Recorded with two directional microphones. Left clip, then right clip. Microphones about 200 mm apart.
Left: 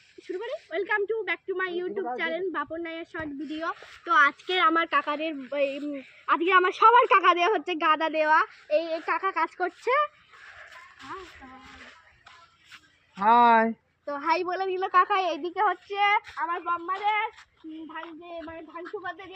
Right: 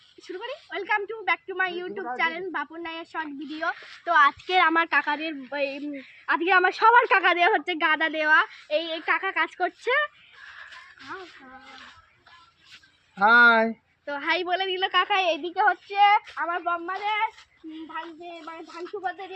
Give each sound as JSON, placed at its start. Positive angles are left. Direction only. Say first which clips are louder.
{"t": 0.3, "sound": "a woman's voice", "louder": "left 2 dB", "side_deg": -5}
{"t": 4.7, "sound": "a woman's voice", "louder": "right 2 dB", "side_deg": -20}
{"t": 8.7, "sound": "a woman's voice", "louder": "right 1 dB", "side_deg": 20}
{"t": 13.2, "sound": "speech", "louder": "right 2 dB", "side_deg": -5}
{"t": 14.1, "sound": "a woman's voice", "louder": "right 1 dB", "side_deg": 15}
{"t": 16.3, "sound": "a woman's voice", "louder": "right 2 dB", "side_deg": -15}